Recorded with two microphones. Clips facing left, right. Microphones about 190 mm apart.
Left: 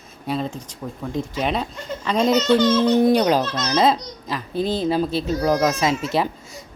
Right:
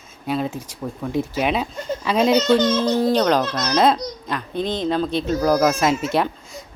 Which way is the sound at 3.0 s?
20° left (ahead or behind).